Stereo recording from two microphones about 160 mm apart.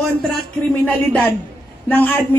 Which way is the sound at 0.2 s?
Centre (ahead or behind).